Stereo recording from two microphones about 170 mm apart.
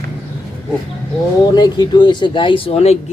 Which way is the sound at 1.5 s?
25° left (ahead or behind).